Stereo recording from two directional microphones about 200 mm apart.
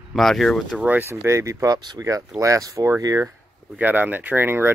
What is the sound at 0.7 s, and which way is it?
Speech, 10° right (ahead or behind).